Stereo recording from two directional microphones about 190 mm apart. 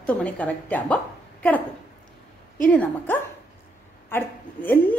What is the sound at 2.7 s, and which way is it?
A woman's voice, 5° left (ahead or behind).